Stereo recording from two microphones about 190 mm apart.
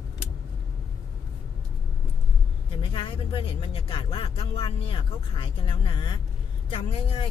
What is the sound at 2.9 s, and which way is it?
Speech, 25° left (ahead or behind).